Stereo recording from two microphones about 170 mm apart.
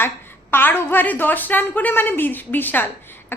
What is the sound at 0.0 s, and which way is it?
A woman's voice, 15° left (ahead or behind).